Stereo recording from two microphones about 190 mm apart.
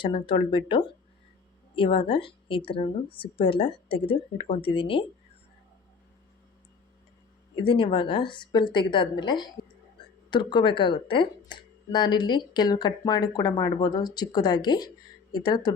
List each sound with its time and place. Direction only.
0.0 s speech: 25° left (ahead or behind)
7.5 s speech: 25° left (ahead or behind)